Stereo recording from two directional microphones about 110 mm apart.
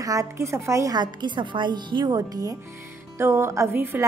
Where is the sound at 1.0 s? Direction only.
45° right (ahead or behind).